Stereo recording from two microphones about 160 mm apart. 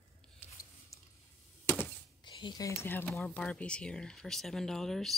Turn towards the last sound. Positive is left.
turn(degrees=0)  # may be behind; listen again after turning